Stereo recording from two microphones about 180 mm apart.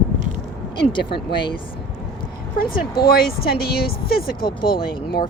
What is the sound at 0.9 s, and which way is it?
Speech, 25° left (ahead or behind).